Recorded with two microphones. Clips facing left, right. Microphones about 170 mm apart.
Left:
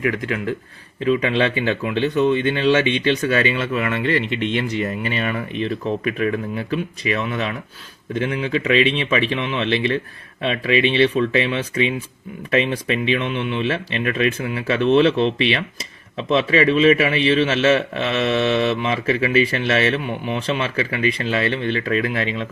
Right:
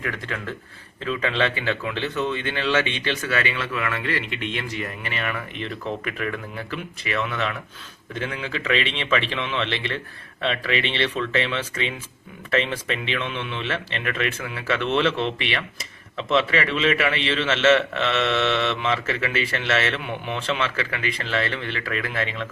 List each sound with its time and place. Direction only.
0.0 s a man's voice: 15° left (ahead or behind)
7.0 s a man's voice: 15° left (ahead or behind)